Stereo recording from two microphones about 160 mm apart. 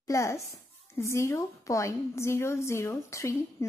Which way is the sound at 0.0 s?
20° left (ahead or behind).